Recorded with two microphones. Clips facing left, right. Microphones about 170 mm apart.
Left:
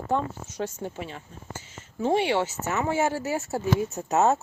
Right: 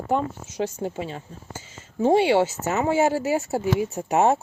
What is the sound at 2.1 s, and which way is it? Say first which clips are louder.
Speech: right 5 dB; 25° right (ahead or behind).